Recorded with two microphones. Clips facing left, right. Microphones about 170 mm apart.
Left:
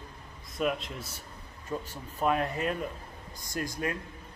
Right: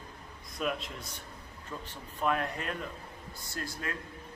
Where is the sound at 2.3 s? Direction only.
5° left (ahead or behind).